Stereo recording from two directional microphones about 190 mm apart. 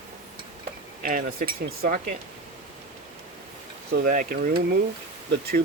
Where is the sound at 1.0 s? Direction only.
50° right (ahead or behind).